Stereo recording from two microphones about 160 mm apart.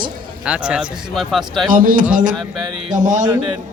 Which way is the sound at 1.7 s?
60° right (ahead or behind).